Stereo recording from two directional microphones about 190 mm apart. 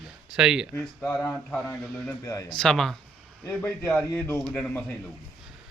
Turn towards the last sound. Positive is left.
turn(degrees=5)  # may be behind; listen again after turning